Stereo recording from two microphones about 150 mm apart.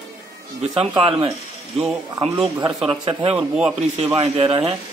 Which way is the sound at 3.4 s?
5° right (ahead or behind).